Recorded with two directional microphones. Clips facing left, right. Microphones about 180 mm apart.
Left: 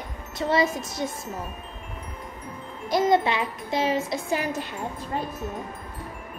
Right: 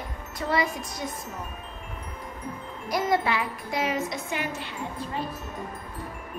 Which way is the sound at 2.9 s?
20° left (ahead or behind).